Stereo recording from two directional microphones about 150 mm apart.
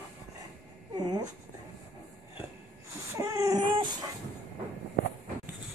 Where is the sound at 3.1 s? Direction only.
20° right (ahead or behind).